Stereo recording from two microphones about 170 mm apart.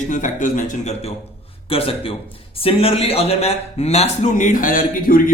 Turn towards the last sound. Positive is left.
turn(degrees=55)  # may be behind; listen again after turning